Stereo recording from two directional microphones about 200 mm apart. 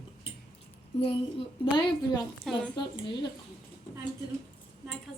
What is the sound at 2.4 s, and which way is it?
Speech, centre (ahead or behind).